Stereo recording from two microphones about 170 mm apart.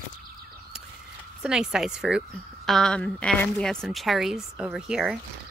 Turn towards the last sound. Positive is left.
turn(degrees=-5)  # may be behind; listen again after turning